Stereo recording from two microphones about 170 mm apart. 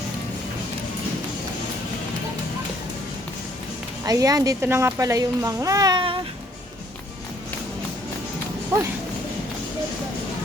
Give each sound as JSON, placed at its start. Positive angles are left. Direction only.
{"t": 4.0, "sound": "speech", "side_deg": -20}